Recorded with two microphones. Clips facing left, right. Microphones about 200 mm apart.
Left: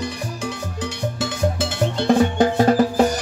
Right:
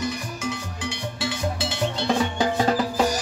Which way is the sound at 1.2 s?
50° left (ahead or behind).